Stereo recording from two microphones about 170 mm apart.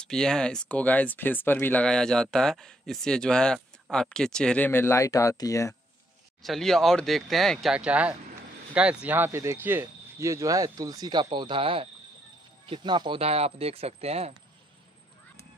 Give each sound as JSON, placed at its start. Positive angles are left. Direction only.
{"t": 0.0, "sound": "speech", "side_deg": 5}
{"t": 6.4, "sound": "speech", "side_deg": 0}